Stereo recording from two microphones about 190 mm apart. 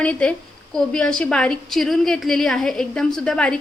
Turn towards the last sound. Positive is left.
turn(degrees=5)  # may be behind; listen again after turning